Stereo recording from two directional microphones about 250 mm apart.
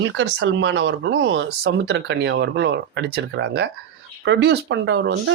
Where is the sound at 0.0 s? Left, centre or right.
Right.